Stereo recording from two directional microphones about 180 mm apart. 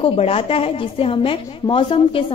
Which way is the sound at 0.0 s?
30° left (ahead or behind).